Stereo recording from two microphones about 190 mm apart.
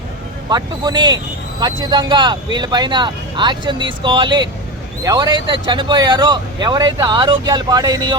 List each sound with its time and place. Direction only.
0.5 s speech: 20° right (ahead or behind)